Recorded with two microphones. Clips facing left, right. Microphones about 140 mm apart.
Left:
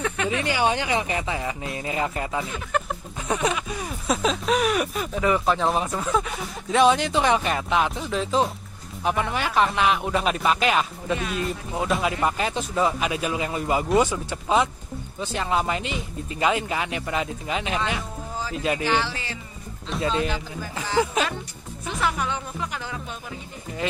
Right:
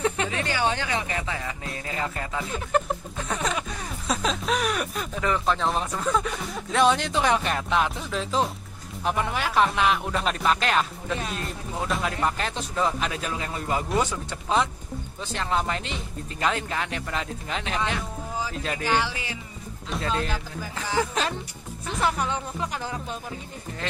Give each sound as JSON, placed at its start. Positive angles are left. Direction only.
{"t": 0.5, "sound": "speech", "side_deg": 15}
{"t": 3.2, "sound": "a sound", "side_deg": 10}
{"t": 4.1, "sound": "speech", "side_deg": 0}
{"t": 18.9, "sound": "speech", "side_deg": -10}
{"t": 19.9, "sound": "speech", "side_deg": 0}
{"t": 22.0, "sound": "music", "side_deg": -35}
{"t": 23.8, "sound": "speech", "side_deg": 10}